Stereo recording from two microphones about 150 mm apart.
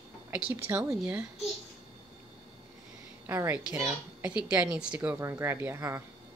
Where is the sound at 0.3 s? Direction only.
10° right (ahead or behind).